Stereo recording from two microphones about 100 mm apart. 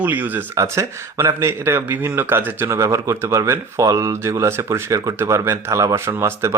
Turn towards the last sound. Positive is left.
turn(degrees=-30)  # may be behind; listen again after turning